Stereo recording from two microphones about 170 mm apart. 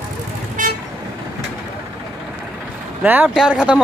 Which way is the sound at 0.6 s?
50° right (ahead or behind).